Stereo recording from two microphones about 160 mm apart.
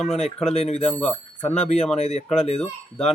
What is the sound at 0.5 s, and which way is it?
Speech, 45° left (ahead or behind).